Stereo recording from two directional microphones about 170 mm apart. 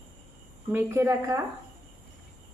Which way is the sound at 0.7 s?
15° right (ahead or behind).